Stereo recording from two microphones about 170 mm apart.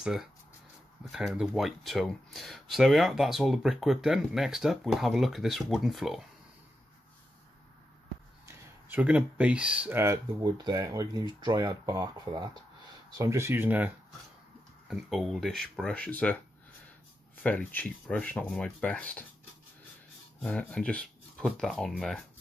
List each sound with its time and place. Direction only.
0.0 s speech: 5° right (ahead or behind)
8.5 s speech: 10° right (ahead or behind); by 16.3 s 10° left (ahead or behind)
17.4 s speech: 10° left (ahead or behind)
20.4 s speech: 5° left (ahead or behind)